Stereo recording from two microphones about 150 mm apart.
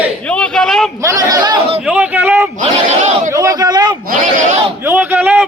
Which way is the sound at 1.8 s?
10° right (ahead or behind).